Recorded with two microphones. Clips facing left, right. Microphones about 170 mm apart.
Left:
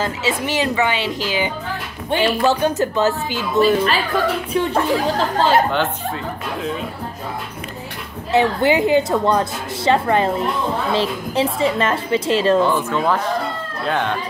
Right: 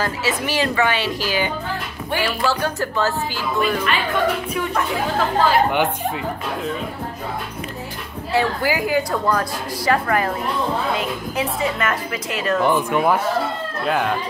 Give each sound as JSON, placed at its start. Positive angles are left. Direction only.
{"t": 0.0, "sound": "a woman's voice", "side_deg": 25}
{"t": 3.7, "sound": "speech", "side_deg": 35}
{"t": 8.3, "sound": "a woman's voice", "side_deg": 20}
{"t": 12.6, "sound": "speech", "side_deg": -15}